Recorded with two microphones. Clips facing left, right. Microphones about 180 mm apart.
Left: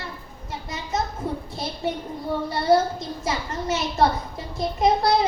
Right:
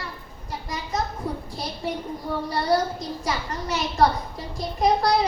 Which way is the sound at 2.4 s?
25° left (ahead or behind).